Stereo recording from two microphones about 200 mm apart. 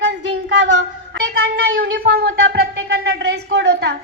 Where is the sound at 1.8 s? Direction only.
50° right (ahead or behind).